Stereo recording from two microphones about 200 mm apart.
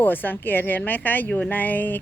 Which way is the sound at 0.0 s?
10° left (ahead or behind).